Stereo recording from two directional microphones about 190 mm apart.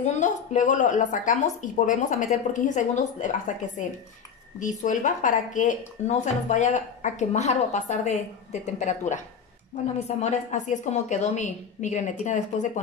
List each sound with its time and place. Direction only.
0.0 s speech: 40° left (ahead or behind)
4.6 s speech: 40° left (ahead or behind)